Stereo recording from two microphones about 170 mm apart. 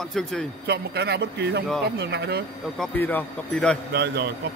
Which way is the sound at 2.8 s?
10° left (ahead or behind).